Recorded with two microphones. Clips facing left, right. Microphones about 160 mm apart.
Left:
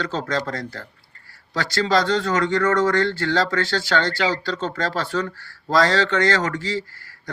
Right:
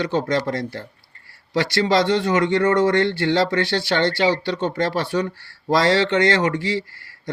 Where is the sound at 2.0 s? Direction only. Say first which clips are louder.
Right 2 dB; 20° right (ahead or behind).